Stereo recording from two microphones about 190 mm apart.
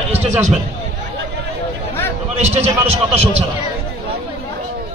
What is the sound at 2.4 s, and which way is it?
A man's voice, 35° right (ahead or behind).